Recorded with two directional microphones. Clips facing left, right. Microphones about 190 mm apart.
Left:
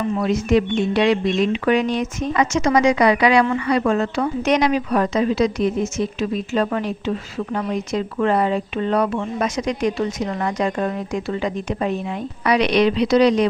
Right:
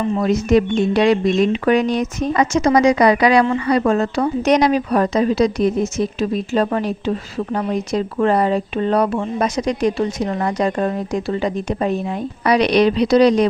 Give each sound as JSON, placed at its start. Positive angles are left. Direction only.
{"t": 0.3, "sound": "a woman's voice", "side_deg": -40}